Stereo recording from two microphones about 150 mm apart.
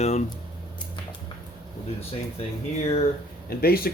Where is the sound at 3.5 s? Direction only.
90° left.